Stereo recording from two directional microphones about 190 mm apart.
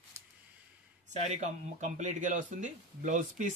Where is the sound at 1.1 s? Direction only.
35° right (ahead or behind).